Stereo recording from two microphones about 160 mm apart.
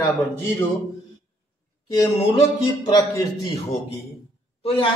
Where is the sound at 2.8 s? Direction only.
25° left (ahead or behind).